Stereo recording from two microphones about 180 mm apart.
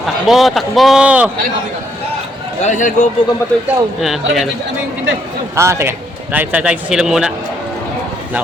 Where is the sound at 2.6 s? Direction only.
45° left (ahead or behind).